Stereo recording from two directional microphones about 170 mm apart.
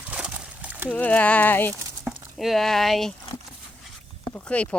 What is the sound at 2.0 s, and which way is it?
Speech, centre (ahead or behind).